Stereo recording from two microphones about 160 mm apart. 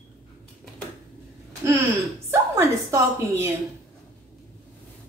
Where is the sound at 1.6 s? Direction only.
20° right (ahead or behind).